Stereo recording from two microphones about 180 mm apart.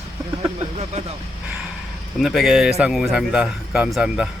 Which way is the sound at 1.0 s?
40° right (ahead or behind).